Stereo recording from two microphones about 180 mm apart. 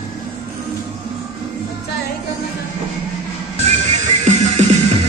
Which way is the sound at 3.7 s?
40° right (ahead or behind).